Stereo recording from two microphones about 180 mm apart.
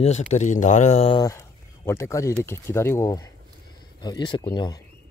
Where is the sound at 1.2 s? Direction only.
15° left (ahead or behind).